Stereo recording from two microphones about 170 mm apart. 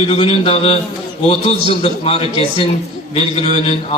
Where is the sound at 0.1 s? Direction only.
35° left (ahead or behind).